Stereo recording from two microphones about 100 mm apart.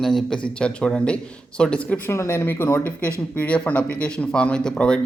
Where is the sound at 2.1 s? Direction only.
25° left (ahead or behind); by 5.0 s 10° left (ahead or behind).